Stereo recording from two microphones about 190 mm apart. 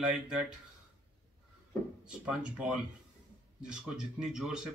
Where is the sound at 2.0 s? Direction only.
5° right (ahead or behind).